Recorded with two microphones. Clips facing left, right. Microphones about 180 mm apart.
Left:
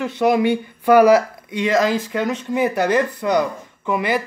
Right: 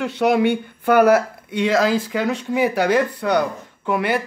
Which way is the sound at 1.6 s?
5° right (ahead or behind).